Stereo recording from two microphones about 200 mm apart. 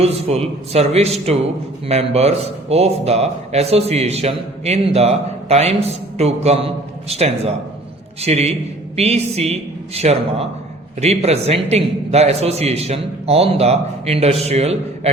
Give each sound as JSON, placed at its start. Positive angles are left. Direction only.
{"t": 0.0, "sound": "a man's voice", "side_deg": -30}